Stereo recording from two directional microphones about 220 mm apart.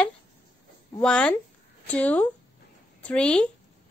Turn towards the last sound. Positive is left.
turn(degrees=5)  # may be behind; listen again after turning